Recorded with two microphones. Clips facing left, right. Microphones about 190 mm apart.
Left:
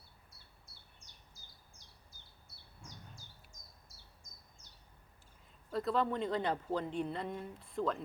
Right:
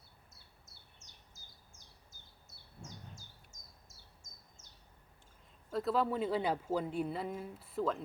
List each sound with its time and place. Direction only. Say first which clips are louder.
0.7 s bird: even; 45° right (ahead or behind)
3.5 s bird: even; 45° right (ahead or behind)
5.7 s speech: right 1 dB; 5° right (ahead or behind)